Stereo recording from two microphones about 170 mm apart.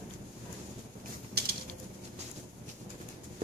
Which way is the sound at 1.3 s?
70° right (ahead or behind).